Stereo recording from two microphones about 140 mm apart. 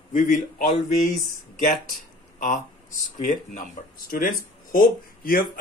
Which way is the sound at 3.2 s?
85° left.